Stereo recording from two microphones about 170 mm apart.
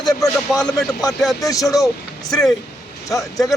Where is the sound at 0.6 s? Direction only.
Centre (ahead or behind).